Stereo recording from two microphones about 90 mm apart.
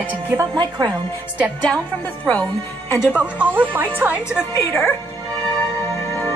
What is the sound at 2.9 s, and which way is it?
Speech, 15° right (ahead or behind).